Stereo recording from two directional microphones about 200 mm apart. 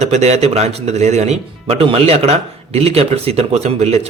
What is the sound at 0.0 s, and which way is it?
Speech, 35° right (ahead or behind).